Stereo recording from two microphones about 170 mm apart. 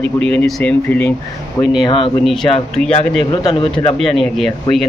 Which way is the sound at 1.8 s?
30° left (ahead or behind).